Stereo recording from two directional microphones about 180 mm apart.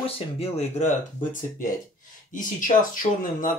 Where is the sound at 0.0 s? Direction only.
35° left (ahead or behind).